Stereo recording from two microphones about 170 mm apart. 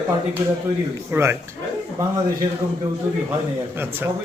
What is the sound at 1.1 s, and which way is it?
Speech, 15° right (ahead or behind).